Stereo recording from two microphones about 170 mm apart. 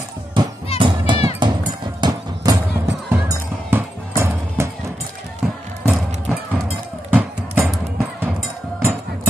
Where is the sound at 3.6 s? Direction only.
15° right (ahead or behind).